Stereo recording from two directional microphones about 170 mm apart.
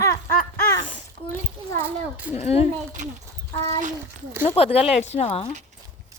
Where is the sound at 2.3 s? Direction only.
40° left (ahead or behind).